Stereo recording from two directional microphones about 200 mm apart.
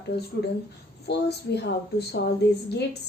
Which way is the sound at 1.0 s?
55° left (ahead or behind).